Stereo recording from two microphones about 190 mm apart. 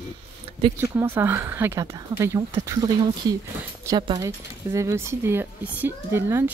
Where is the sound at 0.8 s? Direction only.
15° right (ahead or behind).